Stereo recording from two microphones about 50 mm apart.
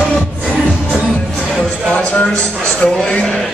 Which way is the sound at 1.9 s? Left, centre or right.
Left.